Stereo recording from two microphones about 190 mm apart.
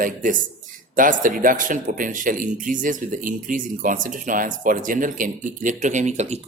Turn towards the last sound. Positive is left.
turn(degrees=-35)  # may be behind; listen again after turning